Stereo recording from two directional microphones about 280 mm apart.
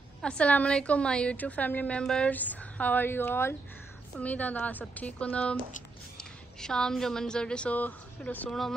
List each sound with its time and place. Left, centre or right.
0.2 s a woman's voice: centre